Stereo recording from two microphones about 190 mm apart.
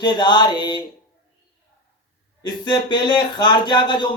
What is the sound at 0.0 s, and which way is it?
Speech, 25° left (ahead or behind).